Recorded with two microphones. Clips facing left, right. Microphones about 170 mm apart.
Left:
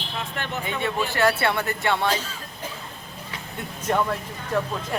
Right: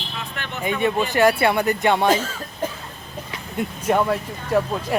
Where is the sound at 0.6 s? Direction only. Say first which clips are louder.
Right 7 dB; 15° right (ahead or behind).